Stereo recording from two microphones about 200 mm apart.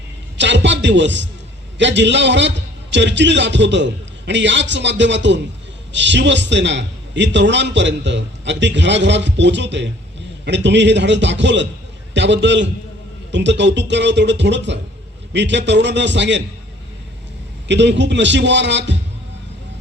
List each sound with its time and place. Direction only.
0.3 s a man's voice: 65° right (ahead or behind)
17.7 s a man's voice: 60° right (ahead or behind)